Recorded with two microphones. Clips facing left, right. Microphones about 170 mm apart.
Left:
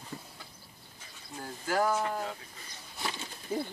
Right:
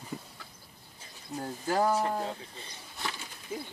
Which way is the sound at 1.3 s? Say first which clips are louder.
Right 2 dB; 25° right (ahead or behind).